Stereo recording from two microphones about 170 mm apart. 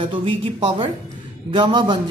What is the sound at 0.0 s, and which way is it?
A man's voice, 30° right (ahead or behind).